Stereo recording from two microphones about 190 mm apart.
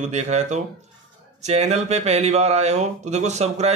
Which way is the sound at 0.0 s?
35° right (ahead or behind).